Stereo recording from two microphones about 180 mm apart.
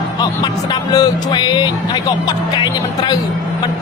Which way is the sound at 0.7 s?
20° left (ahead or behind).